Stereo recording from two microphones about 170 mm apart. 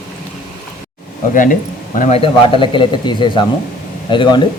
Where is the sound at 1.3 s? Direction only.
50° left (ahead or behind).